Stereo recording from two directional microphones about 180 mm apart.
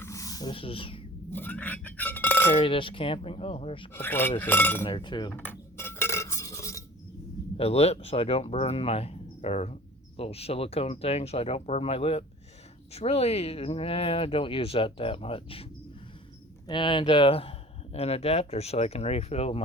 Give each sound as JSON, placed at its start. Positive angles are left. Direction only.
{"t": 0.0, "sound": "snake", "side_deg": 15}
{"t": 1.3, "sound": "chink", "side_deg": 10}
{"t": 2.6, "sound": "speech", "side_deg": 30}
{"t": 3.9, "sound": "speech", "side_deg": 10}
{"t": 4.9, "sound": "speech", "side_deg": 25}
{"t": 5.3, "sound": "dishes", "side_deg": 10}
{"t": 7.5, "sound": "speech", "side_deg": 35}
{"t": 16.6, "sound": "speech", "side_deg": 25}